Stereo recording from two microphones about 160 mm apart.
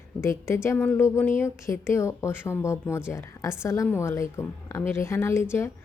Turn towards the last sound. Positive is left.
turn(degrees=15)  # may be behind; listen again after turning